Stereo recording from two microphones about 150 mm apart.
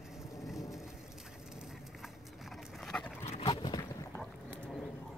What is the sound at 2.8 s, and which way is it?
Dog, 5° left (ahead or behind).